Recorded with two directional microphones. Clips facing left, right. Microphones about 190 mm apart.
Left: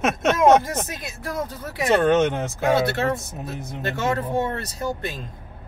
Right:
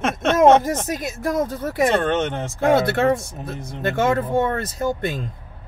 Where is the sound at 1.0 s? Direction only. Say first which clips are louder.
Right 7 dB; 45° right (ahead or behind).